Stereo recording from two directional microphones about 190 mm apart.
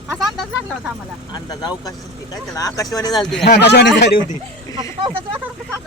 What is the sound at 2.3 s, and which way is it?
Speech, 20° left (ahead or behind).